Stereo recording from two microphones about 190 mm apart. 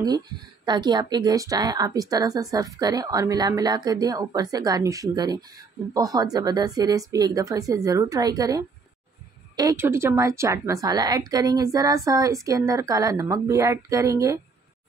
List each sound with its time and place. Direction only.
0.7 s a woman's voice: 20° right (ahead or behind)